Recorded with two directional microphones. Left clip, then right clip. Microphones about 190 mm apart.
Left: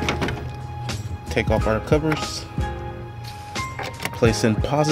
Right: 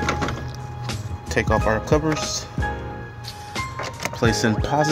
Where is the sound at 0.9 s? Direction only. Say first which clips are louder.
Right 2 dB; 10° left (ahead or behind).